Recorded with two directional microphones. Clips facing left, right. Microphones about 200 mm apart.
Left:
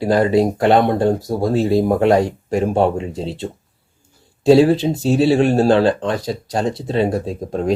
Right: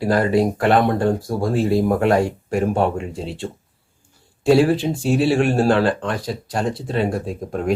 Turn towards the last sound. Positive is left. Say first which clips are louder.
# left 3 dB
turn(degrees=30)  # may be behind; listen again after turning